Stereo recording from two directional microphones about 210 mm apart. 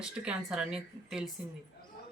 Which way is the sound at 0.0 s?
5° right (ahead or behind).